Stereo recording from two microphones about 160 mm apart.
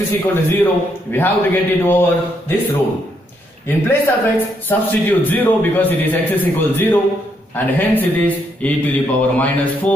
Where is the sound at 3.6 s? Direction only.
10° left (ahead or behind).